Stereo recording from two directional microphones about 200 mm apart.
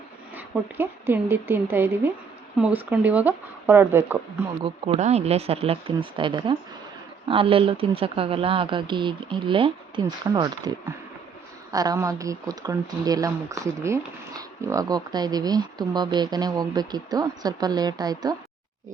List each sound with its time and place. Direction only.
0.3 s a woman's voice: 10° right (ahead or behind)
4.9 s speech: 35° right (ahead or behind)